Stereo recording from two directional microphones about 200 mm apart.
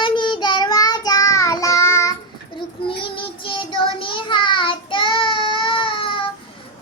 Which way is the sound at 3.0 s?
25° left (ahead or behind).